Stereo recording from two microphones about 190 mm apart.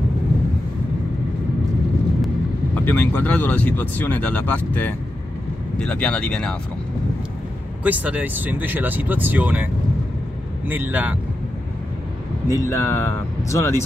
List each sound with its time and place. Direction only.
2.2 s speech: 10° left (ahead or behind)
7.8 s speech: 10° right (ahead or behind)
10.7 s speech: 10° right (ahead or behind)
12.4 s speech: 15° left (ahead or behind)